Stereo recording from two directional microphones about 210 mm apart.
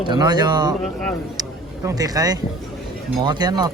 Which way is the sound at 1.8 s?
15° right (ahead or behind).